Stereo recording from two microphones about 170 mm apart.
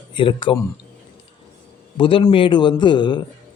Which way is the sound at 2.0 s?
30° left (ahead or behind).